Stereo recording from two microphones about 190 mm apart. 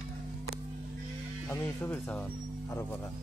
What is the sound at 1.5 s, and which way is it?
Speech, 10° left (ahead or behind).